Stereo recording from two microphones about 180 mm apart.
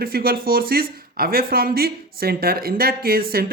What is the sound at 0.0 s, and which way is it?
Speech, 55° right (ahead or behind).